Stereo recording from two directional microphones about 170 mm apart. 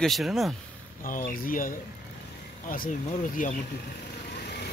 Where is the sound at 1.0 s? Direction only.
55° left (ahead or behind).